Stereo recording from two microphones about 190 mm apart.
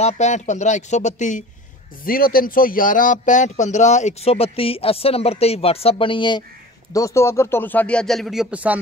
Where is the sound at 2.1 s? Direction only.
50° left (ahead or behind).